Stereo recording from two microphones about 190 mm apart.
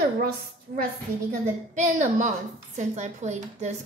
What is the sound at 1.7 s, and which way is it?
A woman's voice, 40° right (ahead or behind).